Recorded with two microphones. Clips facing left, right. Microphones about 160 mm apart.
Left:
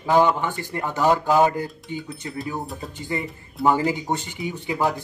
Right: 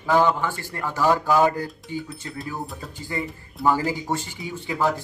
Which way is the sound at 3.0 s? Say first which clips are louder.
Left 1 dB; 20° left (ahead or behind).